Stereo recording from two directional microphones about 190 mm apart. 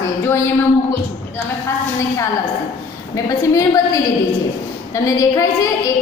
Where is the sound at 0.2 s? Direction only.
15° left (ahead or behind).